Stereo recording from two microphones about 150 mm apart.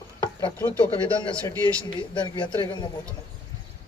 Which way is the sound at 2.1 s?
30° left (ahead or behind).